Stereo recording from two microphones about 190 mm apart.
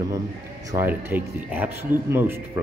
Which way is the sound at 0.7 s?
10° right (ahead or behind).